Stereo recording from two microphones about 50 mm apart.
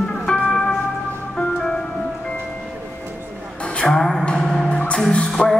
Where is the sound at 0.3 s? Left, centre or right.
Centre.